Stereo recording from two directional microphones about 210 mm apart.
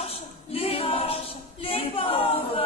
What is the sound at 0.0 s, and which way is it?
A capella, 30° left (ahead or behind).